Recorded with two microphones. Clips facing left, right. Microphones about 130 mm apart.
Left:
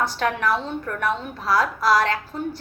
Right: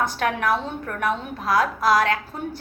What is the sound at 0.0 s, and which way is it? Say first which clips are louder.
A woman's voice: even; 50° right (ahead or behind).